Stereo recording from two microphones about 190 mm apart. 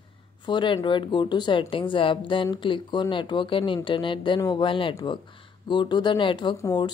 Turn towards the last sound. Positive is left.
turn(degrees=20)  # may be behind; listen again after turning